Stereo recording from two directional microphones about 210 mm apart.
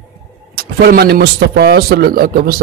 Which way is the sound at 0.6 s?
50° right (ahead or behind).